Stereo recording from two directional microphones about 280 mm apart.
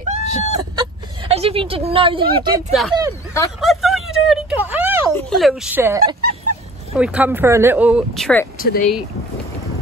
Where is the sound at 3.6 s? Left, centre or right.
Centre.